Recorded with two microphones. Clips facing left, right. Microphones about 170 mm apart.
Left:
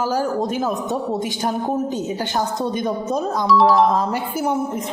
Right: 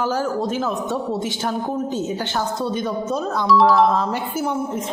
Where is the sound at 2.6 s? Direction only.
15° left (ahead or behind).